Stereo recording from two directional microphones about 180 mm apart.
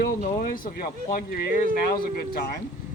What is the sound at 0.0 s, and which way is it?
Speech, 55° left (ahead or behind).